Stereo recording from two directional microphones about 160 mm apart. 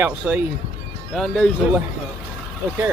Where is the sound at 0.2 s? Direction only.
10° right (ahead or behind).